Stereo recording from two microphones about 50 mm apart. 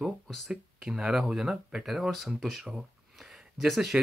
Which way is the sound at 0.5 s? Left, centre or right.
Centre.